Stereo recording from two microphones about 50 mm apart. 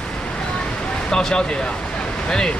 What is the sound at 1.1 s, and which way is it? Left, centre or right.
Speech, centre.